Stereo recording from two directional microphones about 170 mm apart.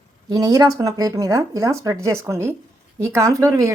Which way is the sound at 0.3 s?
20° right (ahead or behind).